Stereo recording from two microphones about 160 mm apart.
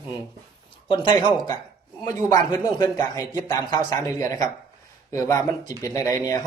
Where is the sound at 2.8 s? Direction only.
25° left (ahead or behind).